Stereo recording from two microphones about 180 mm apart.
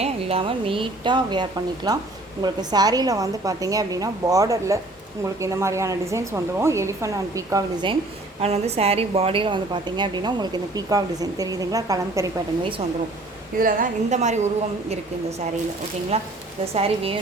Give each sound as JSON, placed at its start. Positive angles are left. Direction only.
{"t": 0.0, "sound": "a woman's voice", "side_deg": -30}
{"t": 8.4, "sound": "a woman's voice", "side_deg": -35}
{"t": 13.6, "sound": "a woman's voice", "side_deg": -50}